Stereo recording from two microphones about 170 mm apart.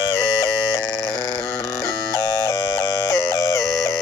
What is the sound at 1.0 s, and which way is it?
Music, 20° left (ahead or behind).